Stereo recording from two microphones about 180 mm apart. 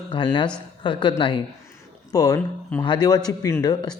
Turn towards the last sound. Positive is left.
turn(degrees=20)  # may be behind; listen again after turning